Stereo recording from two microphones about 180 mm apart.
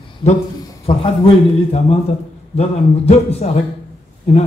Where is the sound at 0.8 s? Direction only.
35° left (ahead or behind).